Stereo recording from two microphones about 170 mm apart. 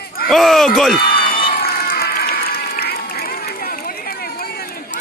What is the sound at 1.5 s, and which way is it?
Applause, 60° left (ahead or behind).